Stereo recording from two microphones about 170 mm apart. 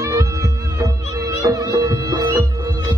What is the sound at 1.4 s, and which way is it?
Music, 20° right (ahead or behind).